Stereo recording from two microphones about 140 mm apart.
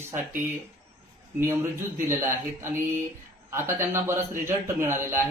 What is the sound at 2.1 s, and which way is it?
A man's voice, 20° right (ahead or behind).